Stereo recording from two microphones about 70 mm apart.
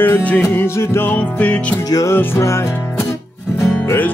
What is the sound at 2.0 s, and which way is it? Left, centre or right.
Music, left.